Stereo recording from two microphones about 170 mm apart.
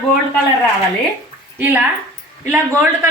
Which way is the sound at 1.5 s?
10° right (ahead or behind).